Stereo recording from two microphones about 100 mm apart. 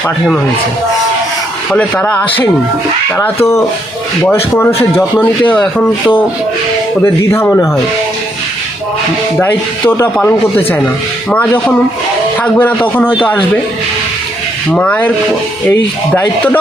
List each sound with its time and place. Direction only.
1.7 s speech: 10° left (ahead or behind)
4.5 s speech: 20° left (ahead or behind)
9.4 s speech: 20° left (ahead or behind)
14.7 s speech: 15° left (ahead or behind)